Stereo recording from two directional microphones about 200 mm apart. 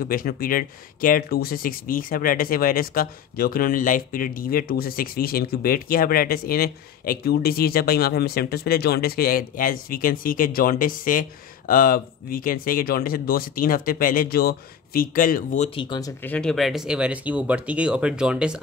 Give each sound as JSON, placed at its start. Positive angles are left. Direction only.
{"t": 0.0, "sound": "speech", "side_deg": 45}
{"t": 15.7, "sound": "speech", "side_deg": 25}
{"t": 16.2, "sound": "speech", "side_deg": 5}